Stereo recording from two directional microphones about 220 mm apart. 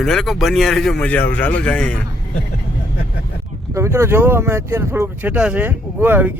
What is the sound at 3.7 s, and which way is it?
Speech, 10° right (ahead or behind).